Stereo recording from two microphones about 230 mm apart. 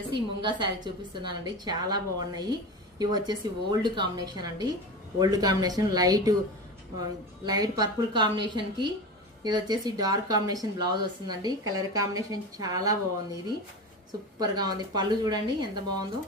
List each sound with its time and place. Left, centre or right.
0.1 s a woman's voice: centre
7.4 s a woman's voice: centre
14.3 s speech: centre